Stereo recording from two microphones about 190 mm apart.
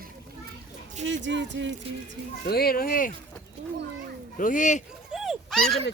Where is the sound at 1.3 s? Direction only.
70° right (ahead or behind).